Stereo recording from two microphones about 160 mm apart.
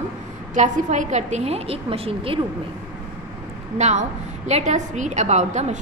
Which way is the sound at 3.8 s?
45° right (ahead or behind).